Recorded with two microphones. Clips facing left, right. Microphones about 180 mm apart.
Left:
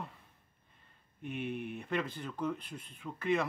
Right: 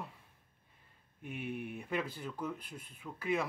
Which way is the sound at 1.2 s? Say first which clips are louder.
Left 3 dB; 10° right (ahead or behind).